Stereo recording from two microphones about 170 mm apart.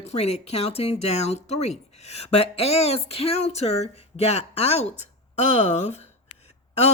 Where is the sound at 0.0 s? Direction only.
35° left (ahead or behind).